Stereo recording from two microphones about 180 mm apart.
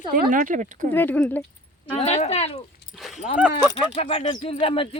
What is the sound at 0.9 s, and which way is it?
Speech, 10° left (ahead or behind).